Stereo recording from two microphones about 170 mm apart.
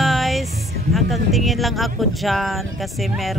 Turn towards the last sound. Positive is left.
turn(degrees=0)  # may be behind; listen again after turning